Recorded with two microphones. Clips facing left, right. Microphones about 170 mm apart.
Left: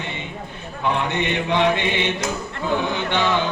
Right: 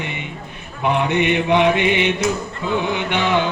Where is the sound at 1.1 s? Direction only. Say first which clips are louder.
Right 5 dB; 15° right (ahead or behind).